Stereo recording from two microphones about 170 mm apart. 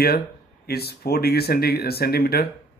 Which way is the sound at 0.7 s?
70° left (ahead or behind).